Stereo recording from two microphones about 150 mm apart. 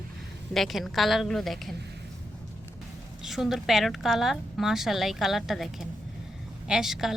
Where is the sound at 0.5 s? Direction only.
Centre (ahead or behind).